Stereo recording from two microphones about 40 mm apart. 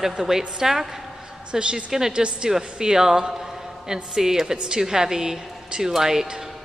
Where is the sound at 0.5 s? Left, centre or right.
Centre.